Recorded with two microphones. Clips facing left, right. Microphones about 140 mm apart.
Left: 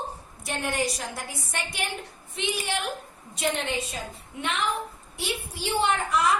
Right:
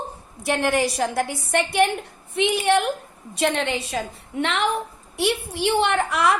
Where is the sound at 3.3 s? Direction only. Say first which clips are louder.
Right 5 dB; 75° right (ahead or behind).